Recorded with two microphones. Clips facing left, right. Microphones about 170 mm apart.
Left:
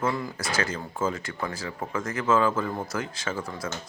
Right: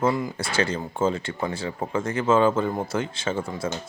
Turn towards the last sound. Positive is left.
turn(degrees=-25)  # may be behind; listen again after turning